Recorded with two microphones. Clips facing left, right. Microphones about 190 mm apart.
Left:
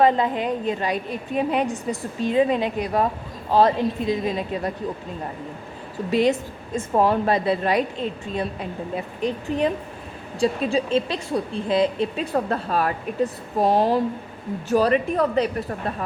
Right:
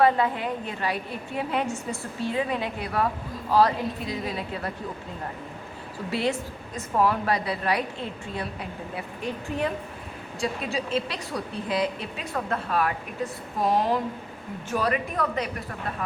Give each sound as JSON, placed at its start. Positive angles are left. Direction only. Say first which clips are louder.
{"t": 0.0, "sound": "a woman's voice", "louder": "left 3 dB", "side_deg": 20}
{"t": 6.1, "sound": "a woman's voice", "louder": "left 7 dB", "side_deg": 20}